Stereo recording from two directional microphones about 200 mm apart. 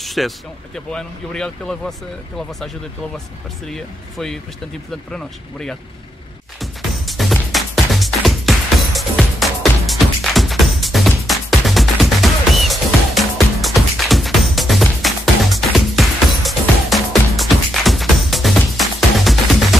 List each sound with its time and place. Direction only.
0.0 s a sound: centre (ahead or behind)
0.7 s speech: 5° left (ahead or behind)
3.7 s speech: centre (ahead or behind)
6.6 s music: centre (ahead or behind)